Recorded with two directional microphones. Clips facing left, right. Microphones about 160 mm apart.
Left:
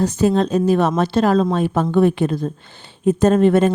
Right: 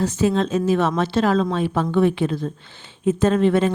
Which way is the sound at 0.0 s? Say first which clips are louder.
Left 3 dB; 40° left (ahead or behind).